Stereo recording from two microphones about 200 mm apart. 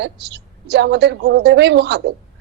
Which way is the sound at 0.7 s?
60° right (ahead or behind).